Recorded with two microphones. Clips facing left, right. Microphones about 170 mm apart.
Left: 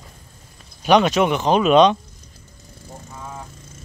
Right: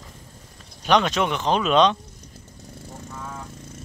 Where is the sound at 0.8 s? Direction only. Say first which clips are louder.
Left 5 dB; 10° left (ahead or behind).